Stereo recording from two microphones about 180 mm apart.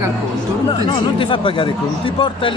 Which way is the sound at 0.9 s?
30° left (ahead or behind).